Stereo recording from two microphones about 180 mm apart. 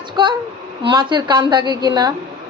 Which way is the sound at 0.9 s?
25° right (ahead or behind).